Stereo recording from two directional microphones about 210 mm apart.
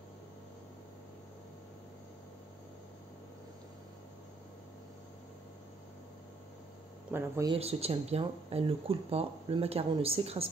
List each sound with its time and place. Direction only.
7.1 s speech: 10° right (ahead or behind)
7.5 s speech: 30° right (ahead or behind)